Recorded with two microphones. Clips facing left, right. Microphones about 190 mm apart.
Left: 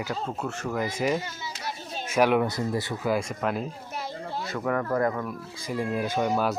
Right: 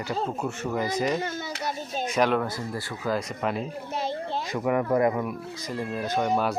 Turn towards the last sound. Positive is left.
turn(degrees=0)  # may be behind; listen again after turning